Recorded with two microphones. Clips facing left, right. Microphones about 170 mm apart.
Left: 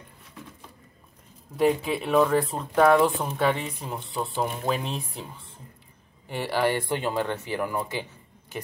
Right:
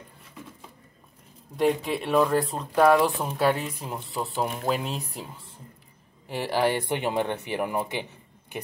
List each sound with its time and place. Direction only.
1.6 s speech: centre (ahead or behind); by 8.1 s 20° right (ahead or behind)